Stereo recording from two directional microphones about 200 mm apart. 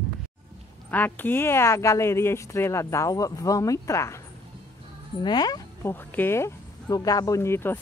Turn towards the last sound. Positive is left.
turn(degrees=10)  # may be behind; listen again after turning